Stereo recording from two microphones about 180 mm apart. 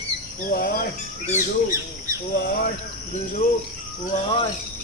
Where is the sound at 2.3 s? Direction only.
55° left (ahead or behind).